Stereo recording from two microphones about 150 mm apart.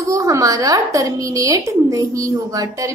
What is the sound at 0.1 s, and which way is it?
A woman's voice, 20° right (ahead or behind).